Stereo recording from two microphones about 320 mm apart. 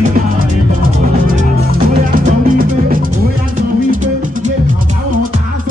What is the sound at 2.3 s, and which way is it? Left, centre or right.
Music, right.